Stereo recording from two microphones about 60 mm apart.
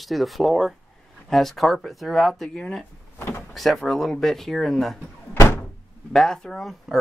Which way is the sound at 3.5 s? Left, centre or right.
Centre.